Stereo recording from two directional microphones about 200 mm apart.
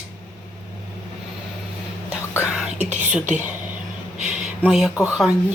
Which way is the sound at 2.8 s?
35° right (ahead or behind).